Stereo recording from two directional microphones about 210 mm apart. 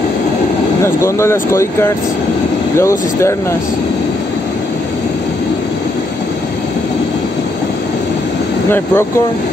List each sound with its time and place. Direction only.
0.8 s speech: 10° left (ahead or behind)
8.6 s speech: 10° left (ahead or behind)